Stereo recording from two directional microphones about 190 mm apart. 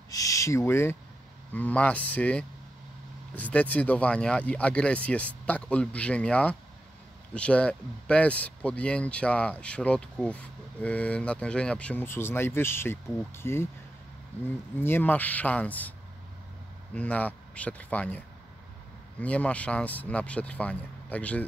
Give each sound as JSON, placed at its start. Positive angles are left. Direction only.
{"t": 0.1, "sound": "speech", "side_deg": 15}
{"t": 14.8, "sound": "speech", "side_deg": 10}
{"t": 16.9, "sound": "speech", "side_deg": 5}